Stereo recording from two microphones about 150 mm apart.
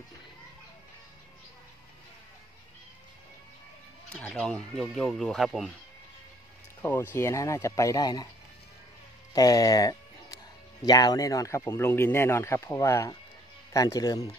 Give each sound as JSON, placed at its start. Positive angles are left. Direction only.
{"t": 4.3, "sound": "speech", "side_deg": 5}
{"t": 6.8, "sound": "speech", "side_deg": 15}
{"t": 9.3, "sound": "music", "side_deg": 25}
{"t": 10.9, "sound": "speech", "side_deg": 25}